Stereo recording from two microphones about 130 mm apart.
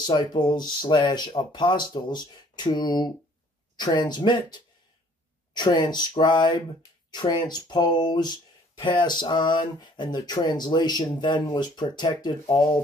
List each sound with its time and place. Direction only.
0.0 s speech: 35° left (ahead or behind)